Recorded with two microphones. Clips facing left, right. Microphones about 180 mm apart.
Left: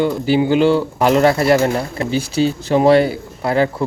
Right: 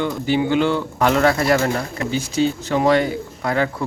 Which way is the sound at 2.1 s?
10° left (ahead or behind).